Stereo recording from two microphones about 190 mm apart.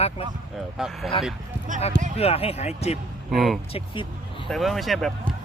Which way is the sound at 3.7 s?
25° left (ahead or behind).